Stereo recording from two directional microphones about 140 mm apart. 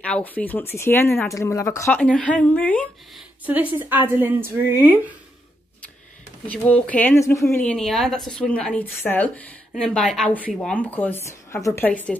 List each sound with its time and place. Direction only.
0.0 s a woman's voice: 10° left (ahead or behind)
2.0 s a woman's voice: 10° left (ahead or behind)
3.4 s a woman's voice: 10° right (ahead or behind)
6.4 s a woman's voice: 10° left (ahead or behind)
7.5 s a woman's voice: 5° left (ahead or behind)